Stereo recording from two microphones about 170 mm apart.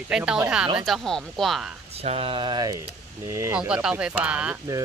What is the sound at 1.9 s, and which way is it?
Speech, 35° right (ahead or behind).